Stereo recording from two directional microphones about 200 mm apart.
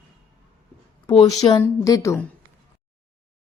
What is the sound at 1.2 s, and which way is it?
A woman's voice, 15° left (ahead or behind).